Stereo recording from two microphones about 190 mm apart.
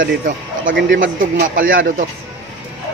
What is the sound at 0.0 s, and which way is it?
Speech, 45° right (ahead or behind).